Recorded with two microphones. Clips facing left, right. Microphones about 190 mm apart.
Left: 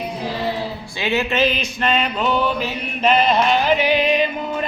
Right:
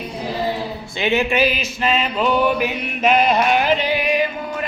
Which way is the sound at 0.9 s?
15° right (ahead or behind).